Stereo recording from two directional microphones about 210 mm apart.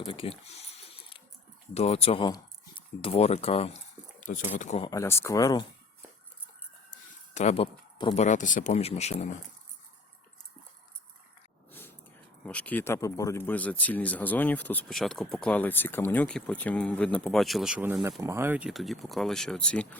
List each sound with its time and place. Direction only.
0.0 s a sound: 25° left (ahead or behind)
1.7 s speech: 30° left (ahead or behind)
4.9 s speech: 15° left (ahead or behind)
6.9 s speech: 35° left (ahead or behind)
11.7 s a sound: 10° left (ahead or behind)
12.5 s speech: 5° left (ahead or behind)